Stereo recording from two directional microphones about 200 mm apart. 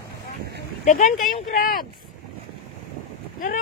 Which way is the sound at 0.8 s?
40° left (ahead or behind).